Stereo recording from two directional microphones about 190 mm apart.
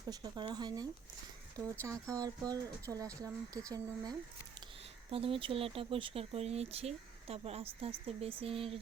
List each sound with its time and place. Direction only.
0.1 s speech: 20° right (ahead or behind)
1.9 s speech: 15° right (ahead or behind)